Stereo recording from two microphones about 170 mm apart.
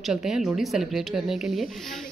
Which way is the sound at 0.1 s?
5° right (ahead or behind).